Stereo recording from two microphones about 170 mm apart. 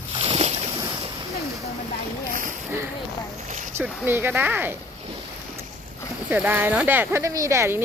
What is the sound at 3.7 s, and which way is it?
Speech, 10° right (ahead or behind).